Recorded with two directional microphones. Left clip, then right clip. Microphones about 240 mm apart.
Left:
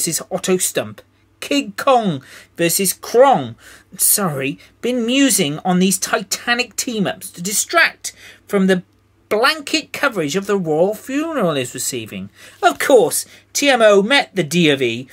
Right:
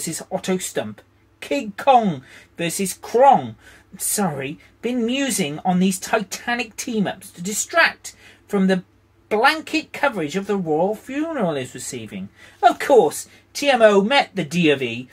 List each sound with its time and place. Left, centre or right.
0.2 s speech: left